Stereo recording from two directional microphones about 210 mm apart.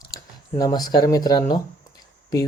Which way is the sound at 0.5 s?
20° left (ahead or behind).